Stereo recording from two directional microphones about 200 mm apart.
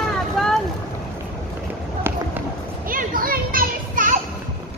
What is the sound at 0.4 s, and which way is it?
Boat, centre (ahead or behind).